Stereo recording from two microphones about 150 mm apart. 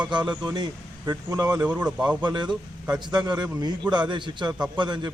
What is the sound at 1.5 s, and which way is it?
Speech, 10° right (ahead or behind).